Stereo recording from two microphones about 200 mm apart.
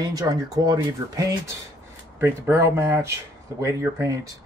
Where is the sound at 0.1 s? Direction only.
20° right (ahead or behind).